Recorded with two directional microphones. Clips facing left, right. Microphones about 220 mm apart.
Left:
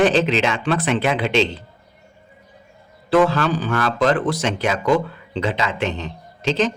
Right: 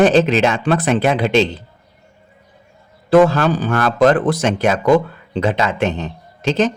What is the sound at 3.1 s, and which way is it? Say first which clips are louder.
A man's voice: right 5 dB; 45° right (ahead or behind).